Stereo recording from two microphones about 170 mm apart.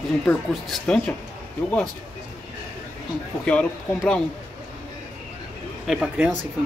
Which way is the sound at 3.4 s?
5° left (ahead or behind).